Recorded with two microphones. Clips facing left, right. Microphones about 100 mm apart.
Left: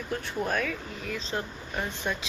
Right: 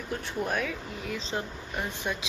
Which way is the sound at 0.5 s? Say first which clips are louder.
Left 1 dB; 15° right (ahead or behind).